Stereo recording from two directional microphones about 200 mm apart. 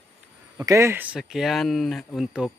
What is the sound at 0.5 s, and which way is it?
Speech, 15° right (ahead or behind).